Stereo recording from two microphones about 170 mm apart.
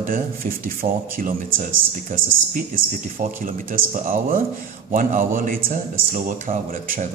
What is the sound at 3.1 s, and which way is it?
A man's voice, 55° right (ahead or behind).